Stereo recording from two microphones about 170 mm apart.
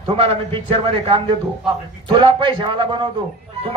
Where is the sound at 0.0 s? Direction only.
30° right (ahead or behind).